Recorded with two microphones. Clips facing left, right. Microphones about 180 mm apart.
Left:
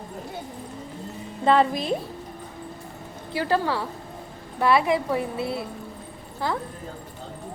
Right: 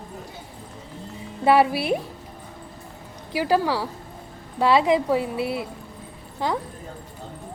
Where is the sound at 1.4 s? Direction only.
10° right (ahead or behind).